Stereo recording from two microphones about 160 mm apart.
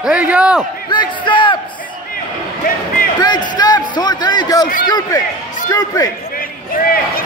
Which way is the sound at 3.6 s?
25° left (ahead or behind).